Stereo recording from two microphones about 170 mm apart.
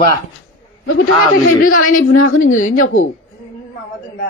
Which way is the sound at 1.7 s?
50° left (ahead or behind).